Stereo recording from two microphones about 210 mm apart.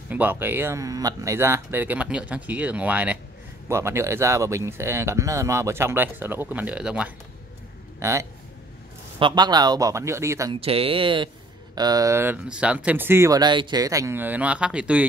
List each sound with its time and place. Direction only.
0.1 s speech: 10° right (ahead or behind)
10.5 s speech: 25° right (ahead or behind); by 15.0 s 5° right (ahead or behind)